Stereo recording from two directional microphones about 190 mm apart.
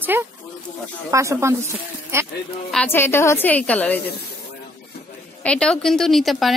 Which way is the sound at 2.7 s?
10° left (ahead or behind).